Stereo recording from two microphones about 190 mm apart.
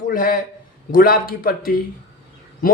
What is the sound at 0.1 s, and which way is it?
Speech, 45° left (ahead or behind).